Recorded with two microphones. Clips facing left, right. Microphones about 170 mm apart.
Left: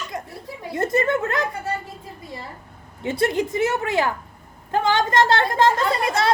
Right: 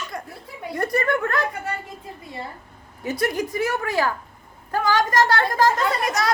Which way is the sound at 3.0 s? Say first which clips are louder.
Left 3 dB; 25° left (ahead or behind).